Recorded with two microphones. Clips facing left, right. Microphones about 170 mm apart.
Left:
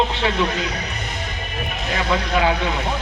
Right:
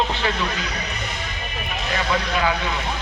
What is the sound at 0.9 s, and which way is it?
Music, 50° left (ahead or behind).